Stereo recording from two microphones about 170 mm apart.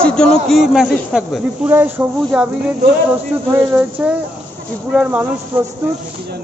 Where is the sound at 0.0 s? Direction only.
5° left (ahead or behind).